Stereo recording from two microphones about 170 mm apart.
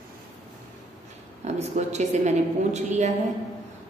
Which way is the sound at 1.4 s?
40° right (ahead or behind).